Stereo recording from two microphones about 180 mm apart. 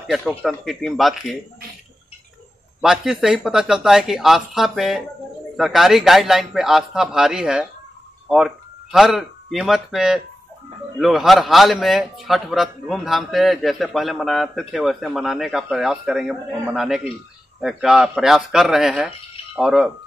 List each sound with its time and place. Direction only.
0.0 s a man's voice: centre (ahead or behind)
2.8 s a man's voice: centre (ahead or behind)